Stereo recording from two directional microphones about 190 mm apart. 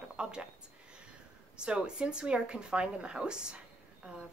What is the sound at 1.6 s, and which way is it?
Speech, 5° right (ahead or behind).